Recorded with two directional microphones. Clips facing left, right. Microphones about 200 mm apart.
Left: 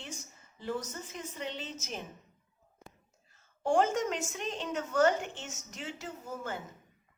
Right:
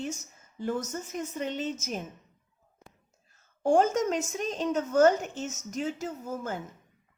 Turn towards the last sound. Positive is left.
turn(degrees=-40)  # may be behind; listen again after turning